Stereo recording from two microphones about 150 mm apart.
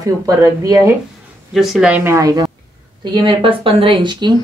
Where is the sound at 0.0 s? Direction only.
25° right (ahead or behind).